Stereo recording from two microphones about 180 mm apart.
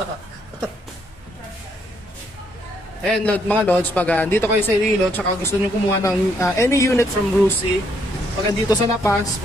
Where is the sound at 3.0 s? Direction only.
10° left (ahead or behind).